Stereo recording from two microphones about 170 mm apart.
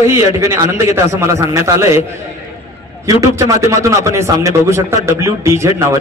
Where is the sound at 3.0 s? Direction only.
20° right (ahead or behind).